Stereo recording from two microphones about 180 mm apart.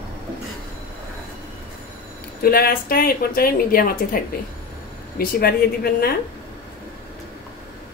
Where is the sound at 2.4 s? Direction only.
55° left (ahead or behind).